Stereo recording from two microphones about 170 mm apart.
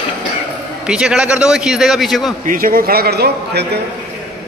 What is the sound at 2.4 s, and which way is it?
A man's voice, 55° right (ahead or behind).